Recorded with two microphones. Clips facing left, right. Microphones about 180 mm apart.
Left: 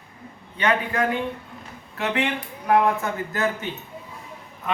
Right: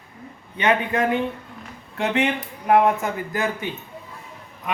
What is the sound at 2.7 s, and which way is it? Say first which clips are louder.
Speech: right 2 dB; 20° right (ahead or behind).